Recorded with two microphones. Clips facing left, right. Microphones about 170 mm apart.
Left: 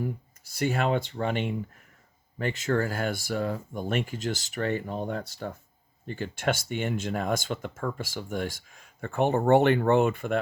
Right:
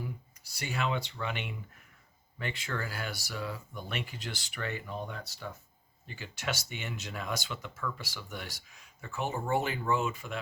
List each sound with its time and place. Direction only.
0.0 s speech: 50° left (ahead or behind)